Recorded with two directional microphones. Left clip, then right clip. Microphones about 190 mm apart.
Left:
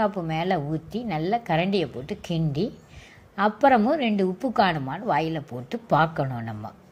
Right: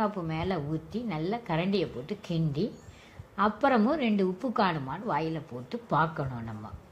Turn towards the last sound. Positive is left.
turn(degrees=25)  # may be behind; listen again after turning